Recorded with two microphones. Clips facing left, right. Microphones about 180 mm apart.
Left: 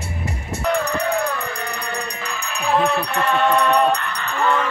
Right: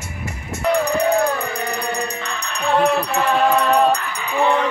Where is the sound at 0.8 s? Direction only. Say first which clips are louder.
Right 4 dB; 20° right (ahead or behind).